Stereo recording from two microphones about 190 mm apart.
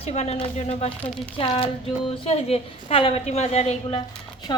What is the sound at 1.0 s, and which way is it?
Speech, 5° left (ahead or behind).